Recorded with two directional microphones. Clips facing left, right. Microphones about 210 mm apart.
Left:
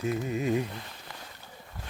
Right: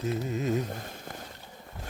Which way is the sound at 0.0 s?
35° right (ahead or behind).